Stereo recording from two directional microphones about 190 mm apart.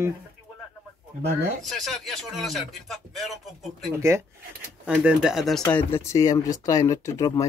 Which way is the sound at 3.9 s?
15° right (ahead or behind).